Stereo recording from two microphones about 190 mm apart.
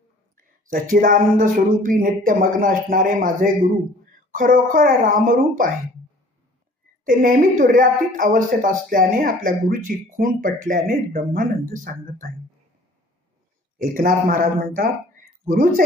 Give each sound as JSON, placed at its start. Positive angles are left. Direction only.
{"t": 0.3, "sound": "a woman's voice", "side_deg": -45}
{"t": 7.0, "sound": "a woman's voice", "side_deg": -45}
{"t": 13.7, "sound": "speech", "side_deg": -45}